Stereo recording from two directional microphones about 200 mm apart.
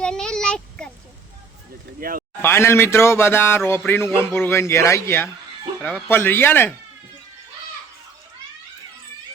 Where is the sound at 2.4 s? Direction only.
10° left (ahead or behind).